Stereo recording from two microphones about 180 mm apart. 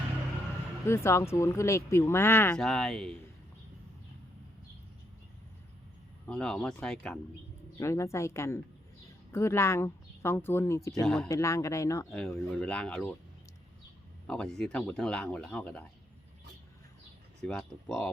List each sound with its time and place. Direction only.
0.9 s speech: 15° left (ahead or behind)
6.2 s speech: 5° left (ahead or behind)
7.8 s speech: 15° left (ahead or behind)
11.0 s speech: 5° left (ahead or behind)
11.3 s speech: 15° left (ahead or behind)
12.3 s speech: 5° left (ahead or behind)
14.3 s speech: 5° left (ahead or behind)
17.4 s speech: 5° left (ahead or behind)